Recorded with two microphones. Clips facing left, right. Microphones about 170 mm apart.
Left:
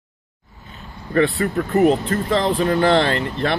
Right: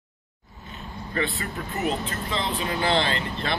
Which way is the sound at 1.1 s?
55° left (ahead or behind).